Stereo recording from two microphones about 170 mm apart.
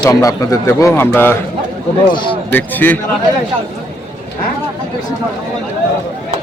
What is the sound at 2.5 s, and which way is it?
Speech, 10° left (ahead or behind).